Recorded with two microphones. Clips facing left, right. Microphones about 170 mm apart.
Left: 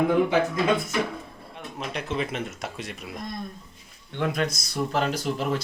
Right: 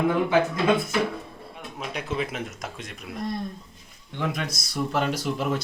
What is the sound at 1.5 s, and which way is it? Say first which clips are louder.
Speech: left 1 dB; centre (ahead or behind).